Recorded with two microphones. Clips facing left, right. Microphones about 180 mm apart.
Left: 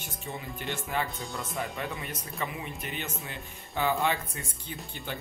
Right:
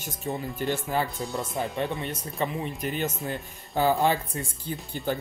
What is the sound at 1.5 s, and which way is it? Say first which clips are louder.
A woman's voice: right 5 dB; 30° right (ahead or behind).